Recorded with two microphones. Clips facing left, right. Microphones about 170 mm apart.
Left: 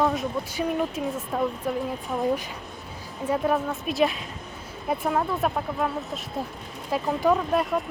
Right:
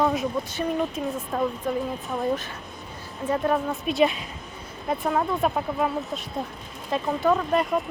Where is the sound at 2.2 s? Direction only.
15° left (ahead or behind).